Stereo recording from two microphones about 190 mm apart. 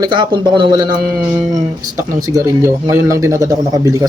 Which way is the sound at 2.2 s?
15° right (ahead or behind).